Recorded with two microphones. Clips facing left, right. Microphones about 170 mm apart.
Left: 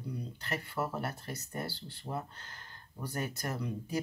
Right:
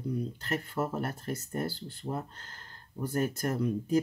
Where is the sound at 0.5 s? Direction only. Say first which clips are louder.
Right 3 dB; 50° right (ahead or behind).